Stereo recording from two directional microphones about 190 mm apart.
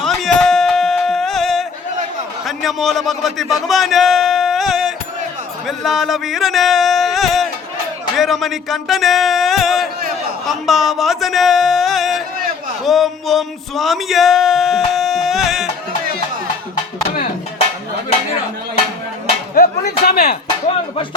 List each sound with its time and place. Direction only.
0.0 s a sound: centre (ahead or behind)
2.6 s a man's voice: centre (ahead or behind)
8.1 s a sound: centre (ahead or behind)
10.4 s speech: centre (ahead or behind)
20.1 s speech: 55° left (ahead or behind)
20.7 s speech: 30° left (ahead or behind)